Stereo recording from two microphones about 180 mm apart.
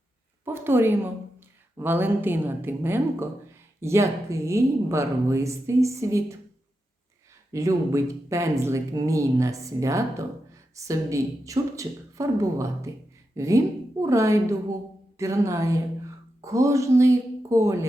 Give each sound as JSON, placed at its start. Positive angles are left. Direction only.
{"t": 0.4, "sound": "speech", "side_deg": -10}
{"t": 7.5, "sound": "a woman's voice", "side_deg": -15}